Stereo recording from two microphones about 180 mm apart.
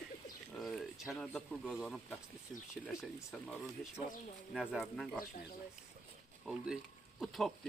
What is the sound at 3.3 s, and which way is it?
Speech, centre (ahead or behind).